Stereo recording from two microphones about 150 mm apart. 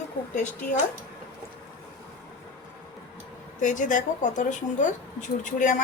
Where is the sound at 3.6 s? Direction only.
60° left (ahead or behind).